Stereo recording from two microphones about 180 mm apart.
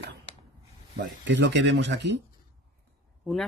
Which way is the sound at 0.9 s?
85° right.